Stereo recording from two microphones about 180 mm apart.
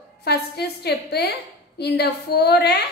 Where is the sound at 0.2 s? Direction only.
65° left (ahead or behind).